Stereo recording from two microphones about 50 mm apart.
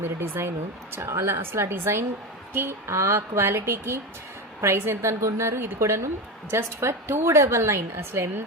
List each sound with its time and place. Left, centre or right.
0.0 s a woman's voice: right
0.9 s a woman's voice: right